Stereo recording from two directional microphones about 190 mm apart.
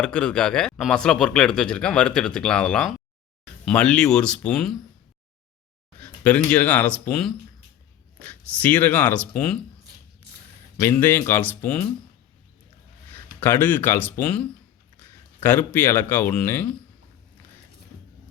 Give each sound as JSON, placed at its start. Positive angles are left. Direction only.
{"t": 0.0, "sound": "speech", "side_deg": 5}
{"t": 6.0, "sound": "speech", "side_deg": 5}
{"t": 10.8, "sound": "speech", "side_deg": 10}
{"t": 13.4, "sound": "speech", "side_deg": 10}